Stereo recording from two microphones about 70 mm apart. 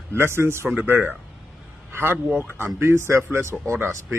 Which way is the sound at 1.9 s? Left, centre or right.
Right.